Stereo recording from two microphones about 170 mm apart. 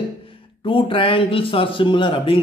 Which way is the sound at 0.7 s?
30° left (ahead or behind).